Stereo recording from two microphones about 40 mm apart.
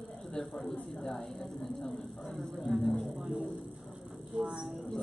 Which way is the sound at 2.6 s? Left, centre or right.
Centre.